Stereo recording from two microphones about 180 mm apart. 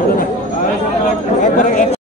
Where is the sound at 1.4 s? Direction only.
45° left (ahead or behind).